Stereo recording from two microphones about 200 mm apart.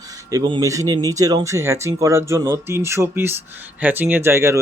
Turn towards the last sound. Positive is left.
turn(degrees=-15)  # may be behind; listen again after turning